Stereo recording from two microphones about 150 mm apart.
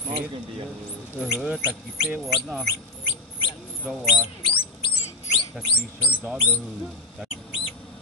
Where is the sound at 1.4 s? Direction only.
10° right (ahead or behind).